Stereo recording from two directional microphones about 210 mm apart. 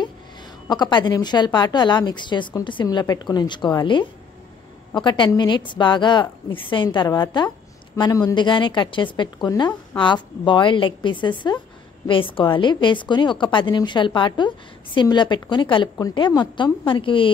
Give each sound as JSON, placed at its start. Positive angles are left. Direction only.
{"t": 0.0, "sound": "a woman's voice", "side_deg": 20}